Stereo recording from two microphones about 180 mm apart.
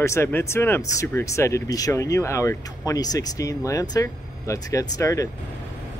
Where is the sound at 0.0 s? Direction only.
15° left (ahead or behind).